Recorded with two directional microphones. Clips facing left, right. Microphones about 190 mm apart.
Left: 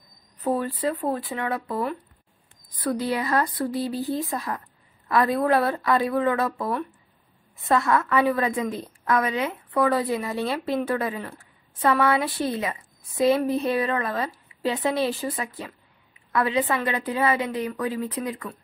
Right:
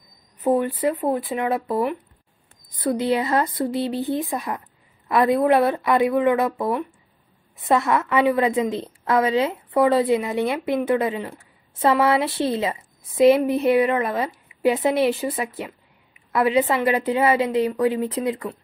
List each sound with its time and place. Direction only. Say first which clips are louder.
0.5 s speech: right 5 dB; 20° right (ahead or behind)